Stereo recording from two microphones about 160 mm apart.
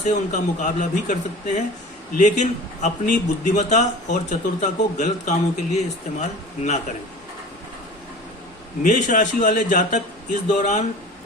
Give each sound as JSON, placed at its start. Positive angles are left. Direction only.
{"t": 0.0, "sound": "a man's voice", "side_deg": 50}
{"t": 2.1, "sound": "a man's voice", "side_deg": 50}
{"t": 8.8, "sound": "a man's voice", "side_deg": 55}